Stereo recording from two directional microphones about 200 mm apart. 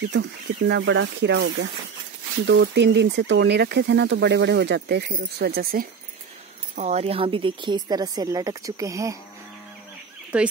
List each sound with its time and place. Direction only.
0.1 s speech: 60° right (ahead or behind)
6.7 s a woman's voice: 35° right (ahead or behind); by 9.2 s 15° right (ahead or behind)